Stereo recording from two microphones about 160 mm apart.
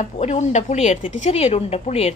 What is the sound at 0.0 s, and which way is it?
Speech, 45° left (ahead or behind).